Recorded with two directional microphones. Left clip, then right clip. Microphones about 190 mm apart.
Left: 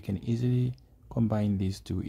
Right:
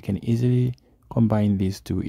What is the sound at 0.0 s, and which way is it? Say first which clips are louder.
Speech: right 7 dB; 35° right (ahead or behind).